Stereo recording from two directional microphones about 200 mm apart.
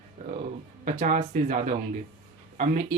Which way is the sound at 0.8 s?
45° right (ahead or behind).